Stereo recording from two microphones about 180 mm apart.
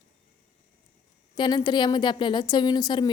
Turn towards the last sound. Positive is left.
turn(degrees=25)  # may be behind; listen again after turning